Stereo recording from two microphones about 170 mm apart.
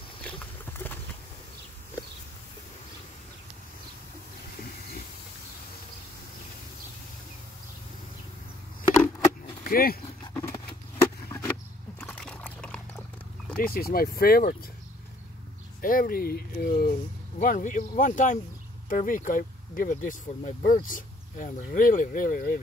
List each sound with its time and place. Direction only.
0.2 s a sound: 10° left (ahead or behind)
9.7 s speech: 60° left (ahead or behind)
10.3 s a sound: 15° left (ahead or behind)
13.6 s speech: 60° left (ahead or behind)
15.8 s speech: 55° left (ahead or behind)
17.4 s speech: 50° left (ahead or behind)